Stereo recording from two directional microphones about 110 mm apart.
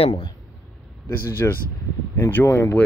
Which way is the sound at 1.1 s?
20° left (ahead or behind).